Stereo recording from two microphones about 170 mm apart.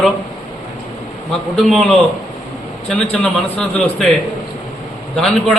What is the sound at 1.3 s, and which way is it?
A man's voice, centre (ahead or behind).